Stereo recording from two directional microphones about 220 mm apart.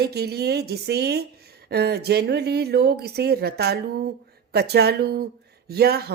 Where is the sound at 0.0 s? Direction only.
45° right (ahead or behind).